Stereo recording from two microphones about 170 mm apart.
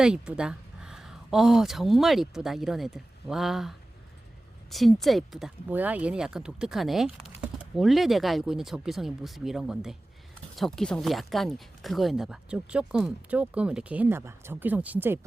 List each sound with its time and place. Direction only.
0.0 s speech: 5° right (ahead or behind)